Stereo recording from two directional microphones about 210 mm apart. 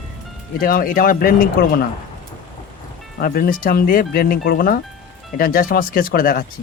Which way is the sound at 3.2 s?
45° left (ahead or behind).